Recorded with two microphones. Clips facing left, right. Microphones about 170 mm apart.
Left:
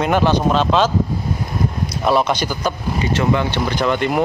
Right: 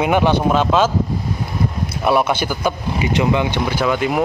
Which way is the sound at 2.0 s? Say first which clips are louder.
Even; 10° right (ahead or behind).